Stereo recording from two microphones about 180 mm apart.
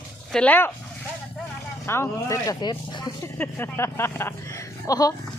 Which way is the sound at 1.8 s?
15° left (ahead or behind).